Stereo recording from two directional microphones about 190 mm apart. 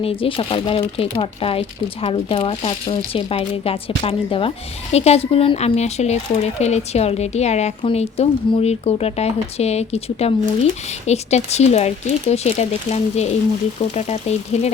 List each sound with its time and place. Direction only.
0.0 s speech: 30° left (ahead or behind)